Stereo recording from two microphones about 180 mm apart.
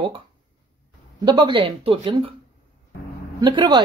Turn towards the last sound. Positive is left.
turn(degrees=-25)  # may be behind; listen again after turning